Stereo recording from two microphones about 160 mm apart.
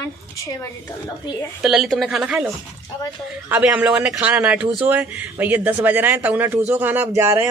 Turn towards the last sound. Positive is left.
turn(degrees=-15)  # may be behind; listen again after turning